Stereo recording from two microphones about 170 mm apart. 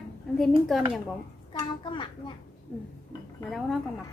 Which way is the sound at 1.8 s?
25° left (ahead or behind).